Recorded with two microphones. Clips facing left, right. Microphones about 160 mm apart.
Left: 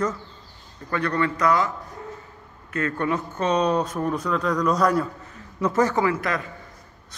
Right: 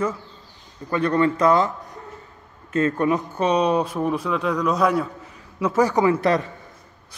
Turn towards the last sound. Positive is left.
turn(degrees=-15)  # may be behind; listen again after turning